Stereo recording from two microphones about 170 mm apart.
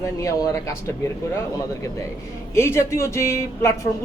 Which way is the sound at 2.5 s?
15° left (ahead or behind).